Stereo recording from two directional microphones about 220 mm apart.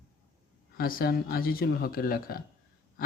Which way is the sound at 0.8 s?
40° left (ahead or behind).